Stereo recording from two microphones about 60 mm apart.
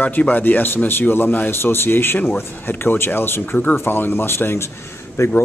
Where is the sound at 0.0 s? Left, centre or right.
Left.